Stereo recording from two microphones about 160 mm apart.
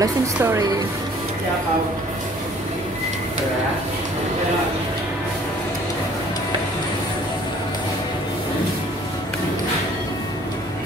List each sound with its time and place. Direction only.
0.0 s a woman's voice: 20° right (ahead or behind)